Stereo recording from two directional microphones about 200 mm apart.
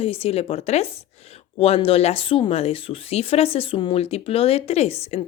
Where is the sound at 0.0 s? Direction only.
30° left (ahead or behind).